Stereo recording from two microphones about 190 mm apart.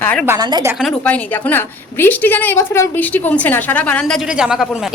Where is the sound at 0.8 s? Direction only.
5° left (ahead or behind).